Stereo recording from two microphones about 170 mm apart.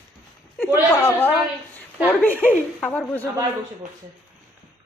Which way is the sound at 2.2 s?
10° left (ahead or behind).